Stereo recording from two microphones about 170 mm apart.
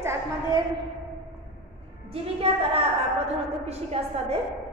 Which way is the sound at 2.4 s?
35° right (ahead or behind).